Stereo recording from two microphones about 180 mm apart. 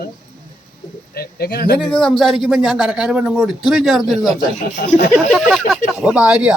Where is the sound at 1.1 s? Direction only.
60° left (ahead or behind).